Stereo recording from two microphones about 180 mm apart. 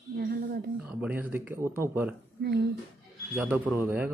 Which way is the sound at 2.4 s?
65° right (ahead or behind).